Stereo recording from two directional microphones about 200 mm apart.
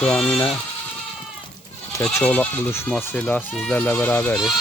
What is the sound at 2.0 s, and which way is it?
Speech, 5° left (ahead or behind).